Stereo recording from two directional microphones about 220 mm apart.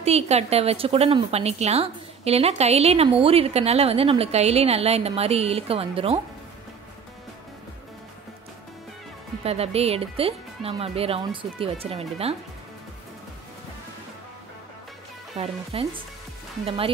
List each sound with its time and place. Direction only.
0.0 s a woman's voice: 30° right (ahead or behind)
9.4 s a woman's voice: 25° right (ahead or behind)
15.3 s a woman's voice: 25° right (ahead or behind)